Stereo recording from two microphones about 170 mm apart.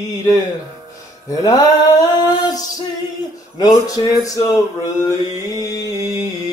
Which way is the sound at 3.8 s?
20° left (ahead or behind).